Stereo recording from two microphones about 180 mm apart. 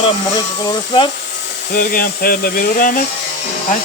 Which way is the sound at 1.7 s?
55° left (ahead or behind).